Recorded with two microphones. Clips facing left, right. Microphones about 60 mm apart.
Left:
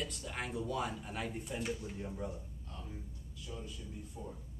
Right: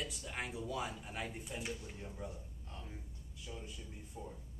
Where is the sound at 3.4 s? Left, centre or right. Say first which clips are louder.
Left 2 dB; right.